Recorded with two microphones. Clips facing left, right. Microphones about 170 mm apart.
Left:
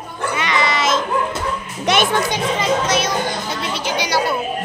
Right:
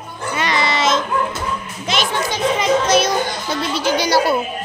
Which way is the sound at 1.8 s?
60° left (ahead or behind).